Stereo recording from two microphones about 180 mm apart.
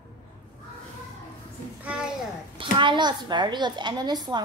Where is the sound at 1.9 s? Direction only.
5° right (ahead or behind).